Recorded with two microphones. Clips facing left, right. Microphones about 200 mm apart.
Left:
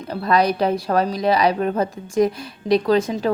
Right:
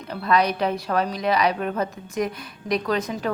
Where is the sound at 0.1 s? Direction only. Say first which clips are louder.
Left 3 dB; 35° left (ahead or behind).